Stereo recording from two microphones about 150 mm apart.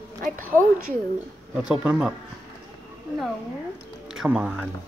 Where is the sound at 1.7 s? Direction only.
10° right (ahead or behind).